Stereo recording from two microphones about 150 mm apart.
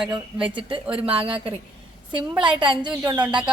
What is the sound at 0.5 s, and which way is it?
A woman's voice, 35° right (ahead or behind).